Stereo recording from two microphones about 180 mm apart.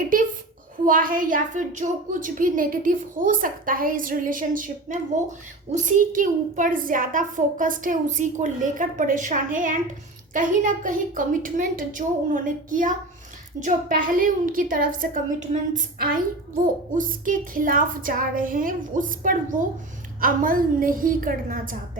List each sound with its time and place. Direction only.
0.1 s a woman's voice: 50° right (ahead or behind)